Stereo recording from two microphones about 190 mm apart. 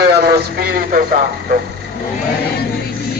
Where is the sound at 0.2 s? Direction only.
55° right (ahead or behind).